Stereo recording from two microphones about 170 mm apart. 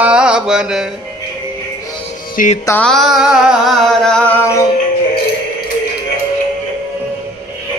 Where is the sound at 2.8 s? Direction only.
Centre (ahead or behind).